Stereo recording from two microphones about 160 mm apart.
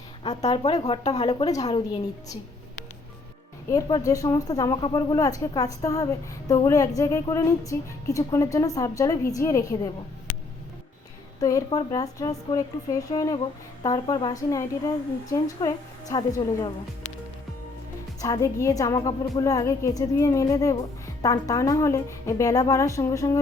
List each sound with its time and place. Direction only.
0.2 s speech: 40° left (ahead or behind)
1.3 s speech: 25° left (ahead or behind)
3.7 s speech: 25° left (ahead or behind)
11.3 s speech: 20° left (ahead or behind)
18.2 s speech: 20° left (ahead or behind)